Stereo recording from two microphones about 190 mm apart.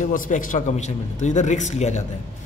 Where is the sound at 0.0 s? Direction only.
45° left (ahead or behind).